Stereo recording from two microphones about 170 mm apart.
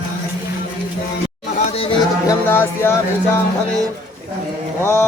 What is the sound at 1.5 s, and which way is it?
Chatter, 35° left (ahead or behind).